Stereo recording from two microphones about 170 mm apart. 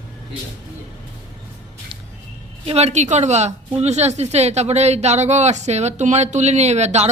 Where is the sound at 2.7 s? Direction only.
40° right (ahead or behind).